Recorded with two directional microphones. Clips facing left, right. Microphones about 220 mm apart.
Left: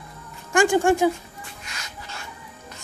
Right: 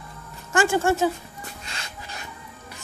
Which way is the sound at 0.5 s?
15° left (ahead or behind).